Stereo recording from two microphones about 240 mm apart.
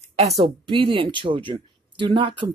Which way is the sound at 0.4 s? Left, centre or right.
Right.